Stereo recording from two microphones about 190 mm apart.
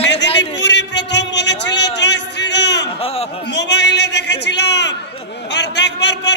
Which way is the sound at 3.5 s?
65° left (ahead or behind).